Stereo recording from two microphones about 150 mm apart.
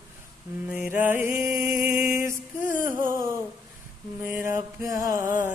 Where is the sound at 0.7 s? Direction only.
10° right (ahead or behind).